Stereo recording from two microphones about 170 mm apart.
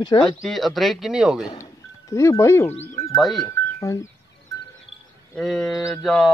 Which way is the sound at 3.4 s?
20° left (ahead or behind).